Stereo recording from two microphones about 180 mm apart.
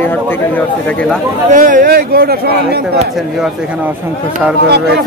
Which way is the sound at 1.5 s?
45° right (ahead or behind).